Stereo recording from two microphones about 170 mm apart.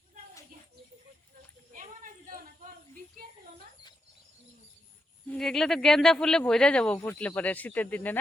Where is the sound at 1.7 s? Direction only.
50° right (ahead or behind).